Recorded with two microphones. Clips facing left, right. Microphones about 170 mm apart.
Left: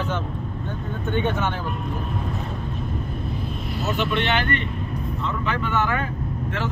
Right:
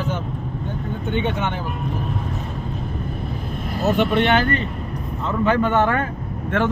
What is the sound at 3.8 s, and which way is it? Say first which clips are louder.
Speech: right 6 dB; 55° right (ahead or behind).